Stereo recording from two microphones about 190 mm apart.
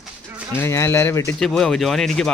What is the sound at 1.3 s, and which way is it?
Speech, centre (ahead or behind).